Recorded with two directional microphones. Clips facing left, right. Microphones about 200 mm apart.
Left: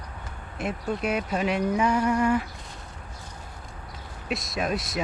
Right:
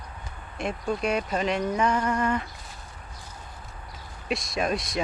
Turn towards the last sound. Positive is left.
turn(degrees=5)  # may be behind; listen again after turning